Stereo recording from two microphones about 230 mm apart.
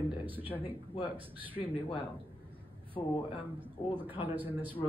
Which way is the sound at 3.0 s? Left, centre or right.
Left.